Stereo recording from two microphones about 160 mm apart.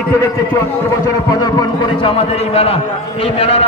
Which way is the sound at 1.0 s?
25° left (ahead or behind).